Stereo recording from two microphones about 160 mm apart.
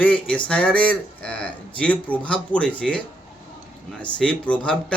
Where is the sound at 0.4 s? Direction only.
5° left (ahead or behind).